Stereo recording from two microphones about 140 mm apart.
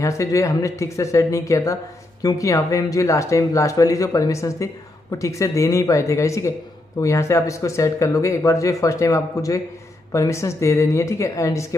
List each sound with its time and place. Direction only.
0.0 s speech: 20° left (ahead or behind)